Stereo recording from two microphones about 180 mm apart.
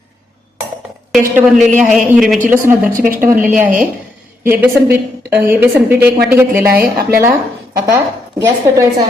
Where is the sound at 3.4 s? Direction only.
10° right (ahead or behind).